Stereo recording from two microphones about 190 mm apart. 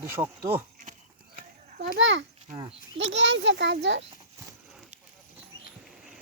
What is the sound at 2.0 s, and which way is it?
A child's voice, 75° right (ahead or behind).